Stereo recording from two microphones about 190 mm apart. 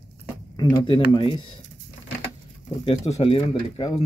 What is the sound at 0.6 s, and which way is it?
Speech, 25° left (ahead or behind).